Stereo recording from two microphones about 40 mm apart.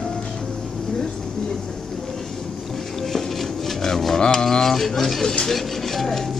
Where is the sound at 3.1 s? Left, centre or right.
Centre.